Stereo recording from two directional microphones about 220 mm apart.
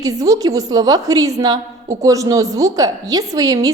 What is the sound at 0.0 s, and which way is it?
A woman's voice, 15° right (ahead or behind).